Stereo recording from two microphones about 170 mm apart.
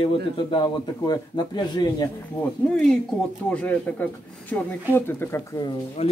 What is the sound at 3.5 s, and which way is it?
Speech, 10° left (ahead or behind).